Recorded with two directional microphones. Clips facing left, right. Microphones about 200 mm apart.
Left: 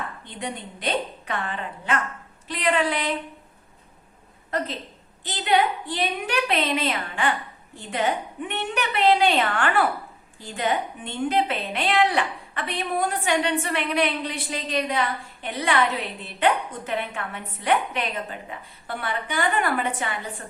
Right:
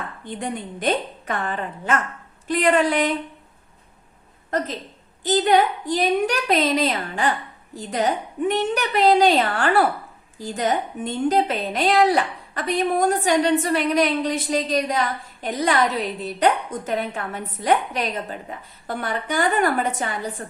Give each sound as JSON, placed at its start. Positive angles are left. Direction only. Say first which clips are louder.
{"t": 0.3, "sound": "a woman's voice", "louder": "right 8 dB", "side_deg": -50}
{"t": 5.2, "sound": "a woman's voice", "louder": "right 5 dB", "side_deg": -45}